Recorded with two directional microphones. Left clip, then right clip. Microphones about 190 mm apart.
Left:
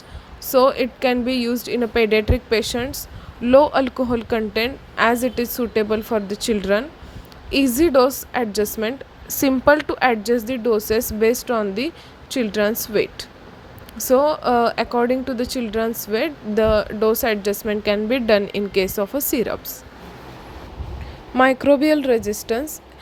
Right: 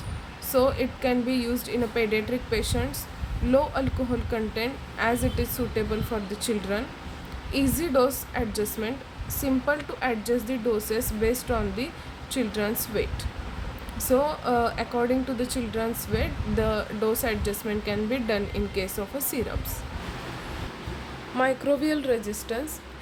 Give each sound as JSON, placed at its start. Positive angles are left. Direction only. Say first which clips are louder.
{"t": 0.5, "sound": "a woman's voice", "louder": "left 7 dB", "side_deg": 40}
{"t": 21.3, "sound": "speech", "louder": "left 9 dB", "side_deg": 40}